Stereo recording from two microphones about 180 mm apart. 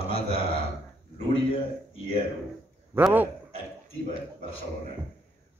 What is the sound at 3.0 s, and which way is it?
Speech, 10° right (ahead or behind).